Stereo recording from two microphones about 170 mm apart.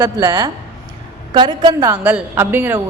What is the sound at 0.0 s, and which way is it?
A woman's voice, 15° right (ahead or behind).